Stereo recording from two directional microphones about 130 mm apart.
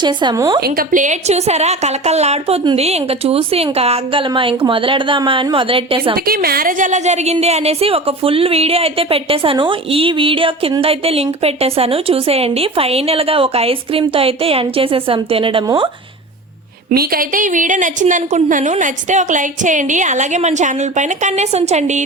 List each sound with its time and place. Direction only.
0.0 s a woman's voice: 35° right (ahead or behind)
0.8 s a woman's voice: 85° right; by 6.1 s 45° right (ahead or behind)
6.3 s a woman's voice: 90° right; by 15.9 s 40° right (ahead or behind)
17.2 s a woman's voice: 85° right; by 22.0 s 65° right (ahead or behind)